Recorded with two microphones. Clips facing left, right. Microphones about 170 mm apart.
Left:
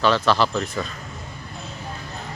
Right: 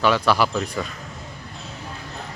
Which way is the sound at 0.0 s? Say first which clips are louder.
Even; 10° right (ahead or behind).